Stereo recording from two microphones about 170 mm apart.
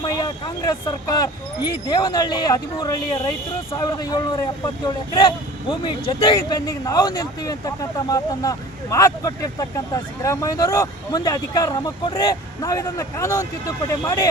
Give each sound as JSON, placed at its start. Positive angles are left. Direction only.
{"t": 0.0, "sound": "a man's voice", "side_deg": 25}